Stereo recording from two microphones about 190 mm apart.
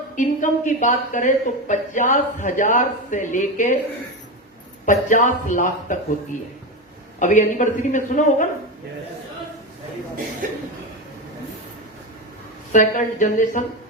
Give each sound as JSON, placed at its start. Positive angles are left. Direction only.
{"t": 0.2, "sound": "speech", "side_deg": 40}
{"t": 4.9, "sound": "speech", "side_deg": 40}
{"t": 7.2, "sound": "speech", "side_deg": 40}
{"t": 10.4, "sound": "chuckle", "side_deg": -45}
{"t": 12.7, "sound": "speech", "side_deg": 40}